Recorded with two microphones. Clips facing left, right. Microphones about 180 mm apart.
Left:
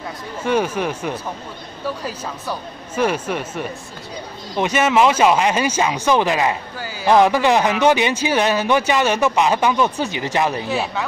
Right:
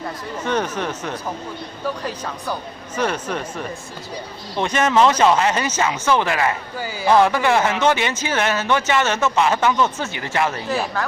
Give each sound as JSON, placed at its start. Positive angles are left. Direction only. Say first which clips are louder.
{"t": 0.4, "sound": "speech", "louder": "left 4 dB", "side_deg": 10}
{"t": 3.0, "sound": "speech", "louder": "left 3 dB", "side_deg": 10}
{"t": 10.7, "sound": "speech", "louder": "even", "side_deg": 0}